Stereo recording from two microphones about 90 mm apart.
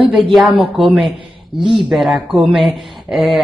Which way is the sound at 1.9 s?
5° right (ahead or behind).